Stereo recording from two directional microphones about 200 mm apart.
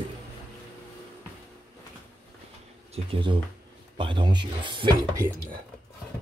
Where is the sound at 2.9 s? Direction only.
25° right (ahead or behind).